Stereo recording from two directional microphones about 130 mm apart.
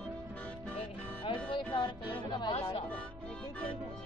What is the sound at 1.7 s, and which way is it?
Music, 40° left (ahead or behind).